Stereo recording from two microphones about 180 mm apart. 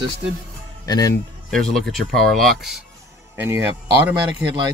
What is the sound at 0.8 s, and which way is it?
Speech, 20° left (ahead or behind).